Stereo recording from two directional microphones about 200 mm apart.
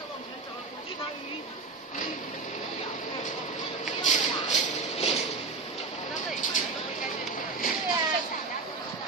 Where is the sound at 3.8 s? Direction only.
35° left (ahead or behind).